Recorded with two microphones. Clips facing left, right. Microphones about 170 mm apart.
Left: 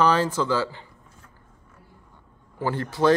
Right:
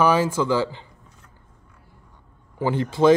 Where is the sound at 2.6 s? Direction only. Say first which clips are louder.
Right 4 dB; 20° right (ahead or behind).